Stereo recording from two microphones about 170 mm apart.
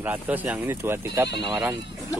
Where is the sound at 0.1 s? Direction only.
10° right (ahead or behind).